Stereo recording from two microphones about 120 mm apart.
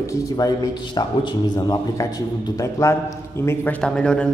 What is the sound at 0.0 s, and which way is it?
A man's voice, 30° left (ahead or behind).